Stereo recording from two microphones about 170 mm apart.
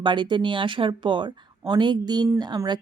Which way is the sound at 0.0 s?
30° right (ahead or behind).